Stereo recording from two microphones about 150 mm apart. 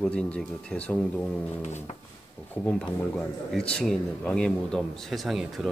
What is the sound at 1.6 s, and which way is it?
Music, 50° left (ahead or behind).